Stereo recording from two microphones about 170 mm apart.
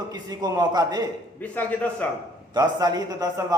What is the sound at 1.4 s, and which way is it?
Speech, 10° left (ahead or behind).